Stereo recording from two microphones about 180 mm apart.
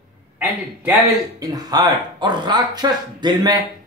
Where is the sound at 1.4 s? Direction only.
20° right (ahead or behind).